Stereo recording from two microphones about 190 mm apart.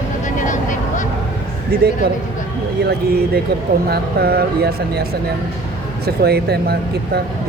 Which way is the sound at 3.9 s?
55° right (ahead or behind).